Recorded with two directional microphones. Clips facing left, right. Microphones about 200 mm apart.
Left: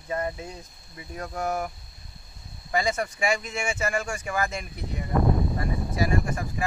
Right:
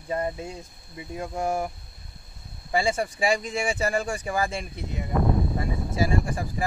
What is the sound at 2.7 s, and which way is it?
Speech, 30° right (ahead or behind).